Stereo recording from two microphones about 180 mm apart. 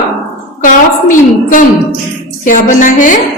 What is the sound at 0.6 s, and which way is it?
A woman's voice, 50° left (ahead or behind).